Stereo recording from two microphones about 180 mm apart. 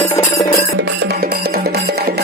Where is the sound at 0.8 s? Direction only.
70° right (ahead or behind).